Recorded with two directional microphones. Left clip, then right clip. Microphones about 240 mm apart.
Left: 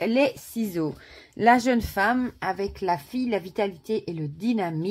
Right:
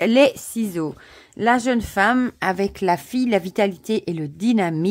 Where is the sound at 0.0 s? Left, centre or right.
Right.